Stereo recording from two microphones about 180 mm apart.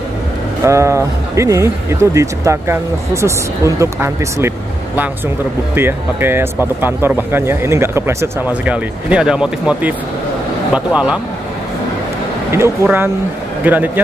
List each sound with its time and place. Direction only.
0.7 s speech: 15° right (ahead or behind)
5.8 s a man's voice: 10° right (ahead or behind)
12.4 s speech: 15° right (ahead or behind)